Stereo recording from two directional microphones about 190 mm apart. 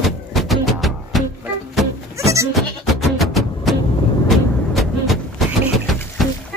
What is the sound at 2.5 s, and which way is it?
Music, centre (ahead or behind).